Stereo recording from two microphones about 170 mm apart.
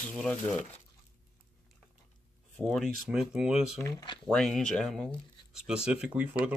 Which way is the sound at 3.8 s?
20° left (ahead or behind).